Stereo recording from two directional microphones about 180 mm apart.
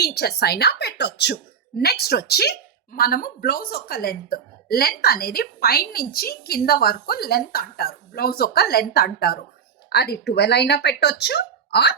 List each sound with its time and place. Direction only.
0.0 s a woman's voice: 60° left (ahead or behind)